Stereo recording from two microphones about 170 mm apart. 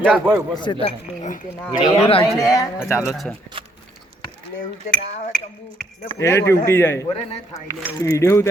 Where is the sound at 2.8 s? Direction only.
5° right (ahead or behind).